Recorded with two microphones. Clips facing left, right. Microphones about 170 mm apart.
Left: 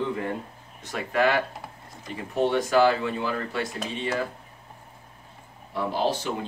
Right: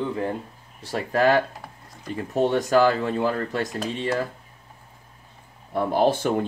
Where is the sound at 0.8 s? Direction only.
35° right (ahead or behind).